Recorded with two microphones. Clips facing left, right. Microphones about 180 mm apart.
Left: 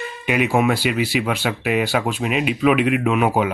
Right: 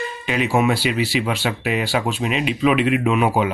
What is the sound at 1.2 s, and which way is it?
Speech, centre (ahead or behind).